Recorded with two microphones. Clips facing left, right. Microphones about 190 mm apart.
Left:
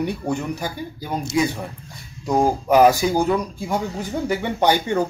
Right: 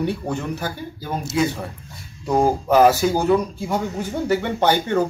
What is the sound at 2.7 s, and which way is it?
Speech, 15° left (ahead or behind).